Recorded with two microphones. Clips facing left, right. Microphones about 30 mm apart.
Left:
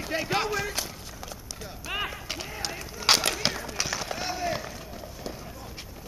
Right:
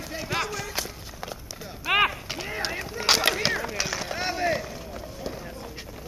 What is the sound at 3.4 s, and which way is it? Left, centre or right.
Run, centre.